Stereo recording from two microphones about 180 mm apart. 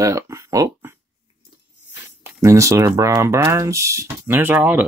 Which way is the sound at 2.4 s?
15° right (ahead or behind).